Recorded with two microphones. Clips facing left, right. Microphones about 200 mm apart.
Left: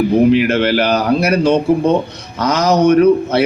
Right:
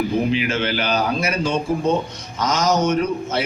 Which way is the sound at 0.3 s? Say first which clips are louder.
Left 9 dB; 65° left (ahead or behind).